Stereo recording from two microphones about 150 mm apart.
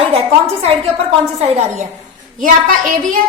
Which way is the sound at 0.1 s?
40° right (ahead or behind).